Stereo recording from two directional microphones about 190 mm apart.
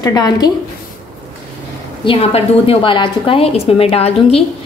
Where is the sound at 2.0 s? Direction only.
30° left (ahead or behind).